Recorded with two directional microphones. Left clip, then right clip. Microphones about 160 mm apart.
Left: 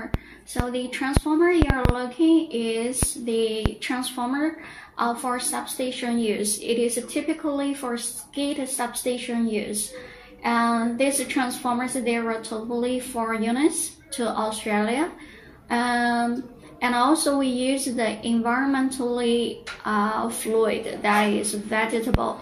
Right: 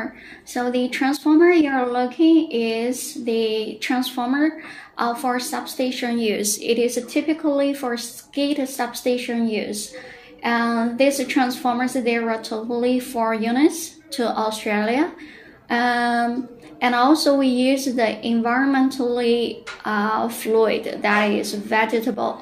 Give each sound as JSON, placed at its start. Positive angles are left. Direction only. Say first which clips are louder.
{"t": 0.7, "sound": "a woman's voice", "louder": "right 6 dB", "side_deg": -40}